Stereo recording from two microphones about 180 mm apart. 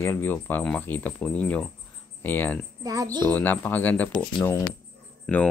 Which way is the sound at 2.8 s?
20° right (ahead or behind).